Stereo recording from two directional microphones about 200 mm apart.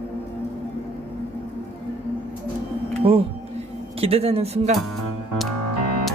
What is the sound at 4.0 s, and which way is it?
Speech, 30° right (ahead or behind).